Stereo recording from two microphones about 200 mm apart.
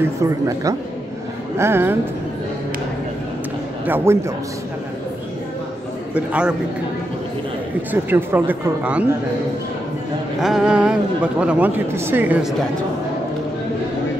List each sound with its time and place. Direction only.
0.2 s speech: 15° right (ahead or behind)
3.8 s speech: 10° right (ahead or behind)
6.1 s speech: 5° right (ahead or behind)
7.9 s speech: 10° right (ahead or behind)
10.4 s speech: 5° right (ahead or behind)